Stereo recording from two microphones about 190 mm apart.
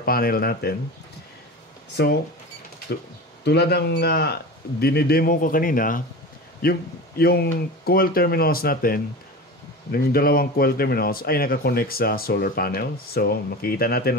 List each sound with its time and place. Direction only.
0.0 s speech: 50° left (ahead or behind)
2.0 s a man's voice: 60° left (ahead or behind)
3.4 s a man's voice: 60° left (ahead or behind)